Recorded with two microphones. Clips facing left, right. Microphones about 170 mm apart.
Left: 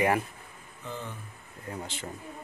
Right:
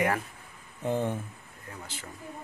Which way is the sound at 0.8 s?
55° right (ahead or behind).